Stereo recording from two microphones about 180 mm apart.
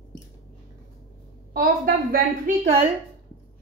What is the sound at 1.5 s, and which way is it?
A woman's voice, 50° right (ahead or behind).